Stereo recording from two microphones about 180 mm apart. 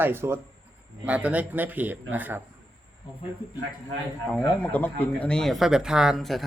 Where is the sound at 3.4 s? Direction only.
30° left (ahead or behind).